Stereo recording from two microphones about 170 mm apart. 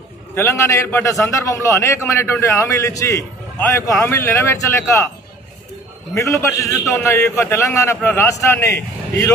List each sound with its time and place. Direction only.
0.3 s a man's voice: 15° left (ahead or behind)
6.1 s a man's voice: 15° left (ahead or behind)